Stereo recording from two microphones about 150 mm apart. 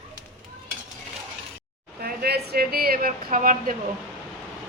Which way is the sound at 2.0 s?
90° right.